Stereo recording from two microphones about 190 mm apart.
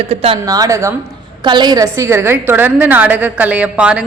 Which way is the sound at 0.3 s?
20° right (ahead or behind).